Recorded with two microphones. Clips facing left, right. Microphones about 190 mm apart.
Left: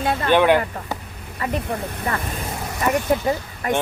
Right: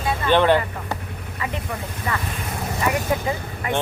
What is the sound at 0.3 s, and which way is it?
Speech, 10° left (ahead or behind).